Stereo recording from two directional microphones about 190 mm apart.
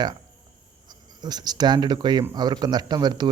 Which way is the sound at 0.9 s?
20° right (ahead or behind).